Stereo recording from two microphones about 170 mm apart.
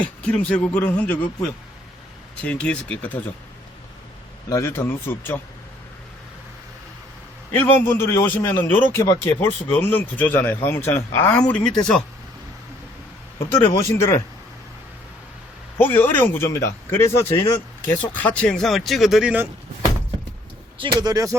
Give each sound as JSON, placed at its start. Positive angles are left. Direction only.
{"t": 0.0, "sound": "speech", "side_deg": 5}
{"t": 4.4, "sound": "speech", "side_deg": 15}
{"t": 7.5, "sound": "speech", "side_deg": 10}
{"t": 13.5, "sound": "speech", "side_deg": 15}
{"t": 15.8, "sound": "speech", "side_deg": 10}
{"t": 20.7, "sound": "speech", "side_deg": -30}